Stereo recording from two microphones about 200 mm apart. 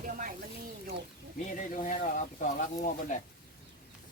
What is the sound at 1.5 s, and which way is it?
Speech, 40° left (ahead or behind).